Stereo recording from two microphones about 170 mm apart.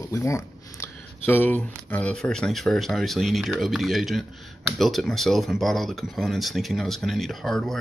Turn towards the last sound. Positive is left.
turn(degrees=0)  # may be behind; listen again after turning